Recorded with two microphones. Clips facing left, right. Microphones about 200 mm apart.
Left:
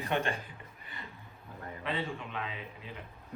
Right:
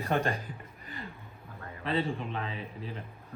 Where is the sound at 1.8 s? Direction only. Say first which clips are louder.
Right 6 dB; 35° right (ahead or behind).